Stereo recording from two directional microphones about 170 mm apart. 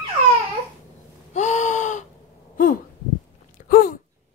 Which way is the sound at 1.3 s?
45° left (ahead or behind).